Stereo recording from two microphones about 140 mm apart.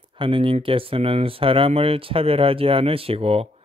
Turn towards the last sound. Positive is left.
turn(degrees=-45)  # may be behind; listen again after turning